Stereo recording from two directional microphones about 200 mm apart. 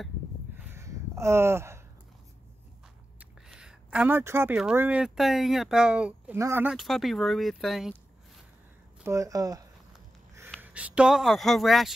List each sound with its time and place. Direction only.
0.6 s a sound: 10° right (ahead or behind)
3.2 s speech: 5° right (ahead or behind)
9.0 s speech: 15° right (ahead or behind)
10.6 s speech: 5° right (ahead or behind)